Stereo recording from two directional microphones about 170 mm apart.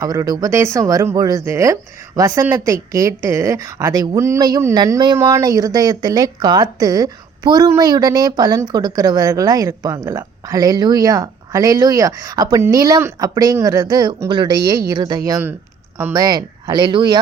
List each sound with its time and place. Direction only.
0.0 s speech: 20° right (ahead or behind)